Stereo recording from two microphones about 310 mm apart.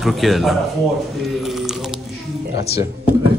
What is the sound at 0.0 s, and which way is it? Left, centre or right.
Speech, centre.